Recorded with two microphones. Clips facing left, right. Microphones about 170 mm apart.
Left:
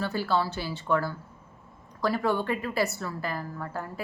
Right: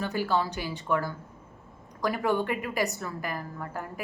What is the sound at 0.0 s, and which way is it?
Speech, 15° right (ahead or behind).